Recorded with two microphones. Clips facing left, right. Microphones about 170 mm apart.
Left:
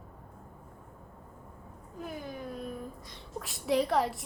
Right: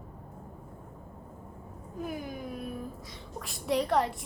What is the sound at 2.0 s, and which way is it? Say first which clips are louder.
Speech: right 3 dB; 10° right (ahead or behind).